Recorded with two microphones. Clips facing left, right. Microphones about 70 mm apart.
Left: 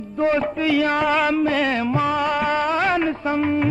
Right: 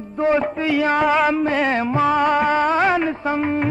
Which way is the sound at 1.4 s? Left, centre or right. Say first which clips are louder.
Right 1 dB; right.